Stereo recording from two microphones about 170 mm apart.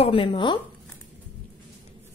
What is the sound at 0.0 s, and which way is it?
Speech, 30° left (ahead or behind).